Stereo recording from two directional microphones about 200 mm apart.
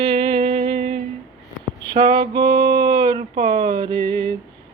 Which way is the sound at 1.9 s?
25° right (ahead or behind).